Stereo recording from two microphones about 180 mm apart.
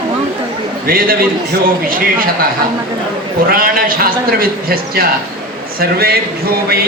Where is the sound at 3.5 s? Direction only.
55° right (ahead or behind).